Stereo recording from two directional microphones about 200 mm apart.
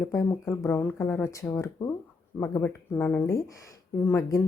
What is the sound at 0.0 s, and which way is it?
A woman's voice, 10° left (ahead or behind).